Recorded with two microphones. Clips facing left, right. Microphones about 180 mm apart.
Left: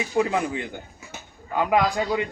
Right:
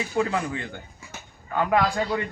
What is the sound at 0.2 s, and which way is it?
Speech, 20° left (ahead or behind).